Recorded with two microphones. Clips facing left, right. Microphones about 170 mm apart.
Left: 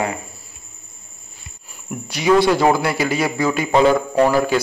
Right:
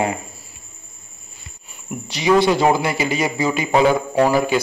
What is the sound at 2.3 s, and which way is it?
A man's voice, 20° right (ahead or behind).